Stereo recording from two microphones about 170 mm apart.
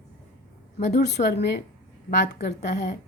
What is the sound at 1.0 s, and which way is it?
Speech, 80° left.